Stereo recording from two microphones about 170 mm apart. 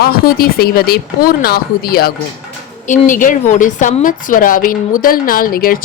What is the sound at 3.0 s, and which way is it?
A woman's voice, 50° left (ahead or behind).